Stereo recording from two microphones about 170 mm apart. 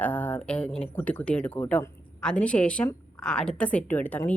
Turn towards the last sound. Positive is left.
turn(degrees=10)  # may be behind; listen again after turning